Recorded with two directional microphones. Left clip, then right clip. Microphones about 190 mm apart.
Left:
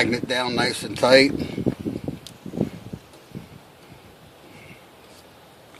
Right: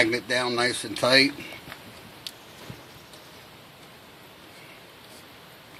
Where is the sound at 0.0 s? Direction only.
45° left (ahead or behind).